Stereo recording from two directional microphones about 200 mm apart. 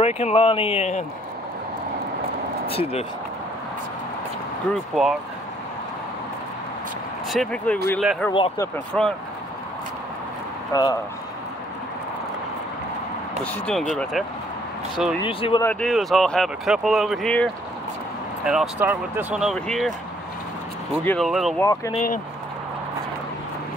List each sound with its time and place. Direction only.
0.0 s speech: 30° left (ahead or behind)
2.6 s speech: 30° left (ahead or behind)
5.0 s speech: centre (ahead or behind)
7.2 s speech: 5° left (ahead or behind)
8.3 s speech: 25° left (ahead or behind)
8.7 s speech: 5° left (ahead or behind)
10.7 s speech: 20° left (ahead or behind)
13.4 s speech: 5° left (ahead or behind)
15.2 s speech: 25° left (ahead or behind)
15.6 s speech: 5° left (ahead or behind)
21.0 s speech: 5° left (ahead or behind)
21.5 s speech: 15° left (ahead or behind)